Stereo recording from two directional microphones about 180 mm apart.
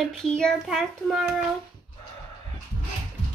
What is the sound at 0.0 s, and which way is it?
A child's voice, centre (ahead or behind).